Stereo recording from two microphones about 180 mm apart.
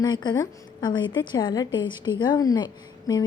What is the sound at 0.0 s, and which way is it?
Speech, 25° left (ahead or behind).